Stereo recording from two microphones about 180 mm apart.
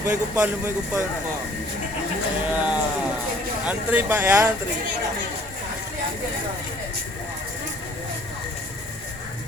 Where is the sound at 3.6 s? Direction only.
10° right (ahead or behind).